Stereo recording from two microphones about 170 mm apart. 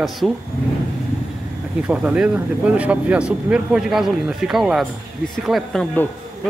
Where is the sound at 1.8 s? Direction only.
5° right (ahead or behind).